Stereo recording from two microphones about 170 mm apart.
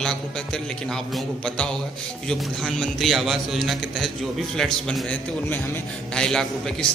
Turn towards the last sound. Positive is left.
turn(degrees=5)  # may be behind; listen again after turning